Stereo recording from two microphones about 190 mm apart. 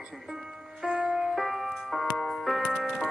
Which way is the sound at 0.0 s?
Centre (ahead or behind).